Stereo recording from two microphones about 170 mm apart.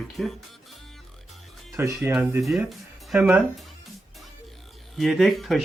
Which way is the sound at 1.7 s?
10° right (ahead or behind).